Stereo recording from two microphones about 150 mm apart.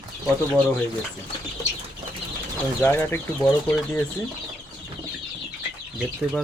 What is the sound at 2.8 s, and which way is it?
Speech, 15° left (ahead or behind).